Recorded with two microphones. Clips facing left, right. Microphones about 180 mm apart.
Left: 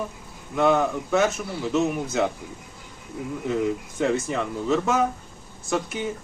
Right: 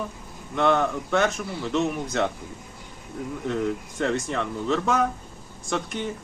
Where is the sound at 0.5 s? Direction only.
5° left (ahead or behind).